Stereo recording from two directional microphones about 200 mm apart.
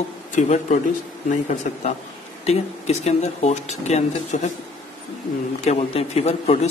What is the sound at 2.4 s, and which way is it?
Speech, 35° left (ahead or behind).